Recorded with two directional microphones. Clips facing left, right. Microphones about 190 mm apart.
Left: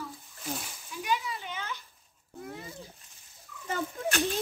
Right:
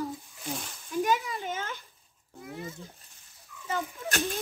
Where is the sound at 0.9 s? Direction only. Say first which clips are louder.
Right 5 dB; 45° right (ahead or behind).